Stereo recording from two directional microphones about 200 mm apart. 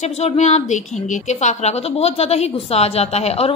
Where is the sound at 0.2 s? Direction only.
35° left (ahead or behind).